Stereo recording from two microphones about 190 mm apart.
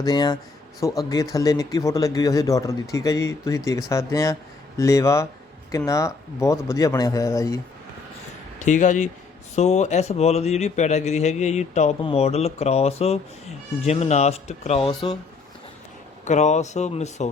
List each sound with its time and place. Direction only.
0.0 s speech: 20° left (ahead or behind)
8.5 s a man's voice: 40° left (ahead or behind)
16.2 s a man's voice: 40° left (ahead or behind)